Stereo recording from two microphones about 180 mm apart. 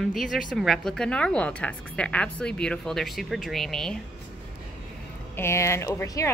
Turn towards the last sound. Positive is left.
turn(degrees=15)  # may be behind; listen again after turning